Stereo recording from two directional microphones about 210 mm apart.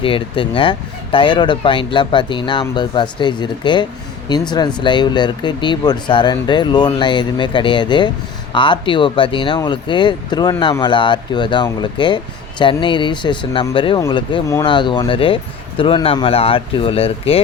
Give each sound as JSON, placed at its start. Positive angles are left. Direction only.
{"t": 0.0, "sound": "speech", "side_deg": 25}